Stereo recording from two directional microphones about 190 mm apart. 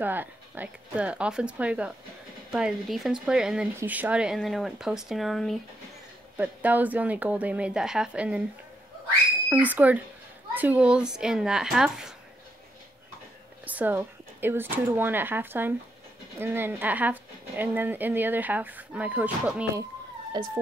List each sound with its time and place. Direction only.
0.0 s speech: 10° right (ahead or behind)
6.3 s speech: 10° right (ahead or behind)
9.5 s speech: 10° right (ahead or behind)
13.7 s speech: 10° right (ahead or behind)
20.4 s speech: 20° right (ahead or behind)